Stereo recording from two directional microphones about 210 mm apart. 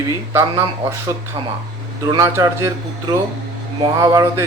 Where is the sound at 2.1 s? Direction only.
15° right (ahead or behind).